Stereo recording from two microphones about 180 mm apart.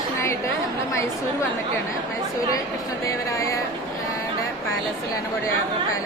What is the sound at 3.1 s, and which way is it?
Speech, 15° left (ahead or behind).